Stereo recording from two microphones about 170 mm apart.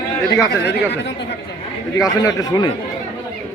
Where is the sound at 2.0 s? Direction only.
20° left (ahead or behind).